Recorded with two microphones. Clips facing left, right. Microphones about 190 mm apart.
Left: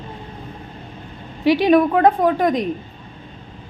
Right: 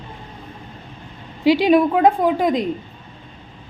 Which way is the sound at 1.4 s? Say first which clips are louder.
Even; 10° right (ahead or behind).